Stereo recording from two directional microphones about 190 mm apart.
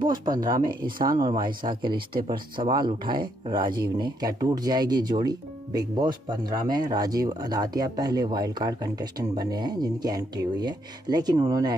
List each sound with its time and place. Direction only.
0.1 s speech: 20° right (ahead or behind)
0.5 s speech: 50° right (ahead or behind)
1.1 s speech: 20° right (ahead or behind)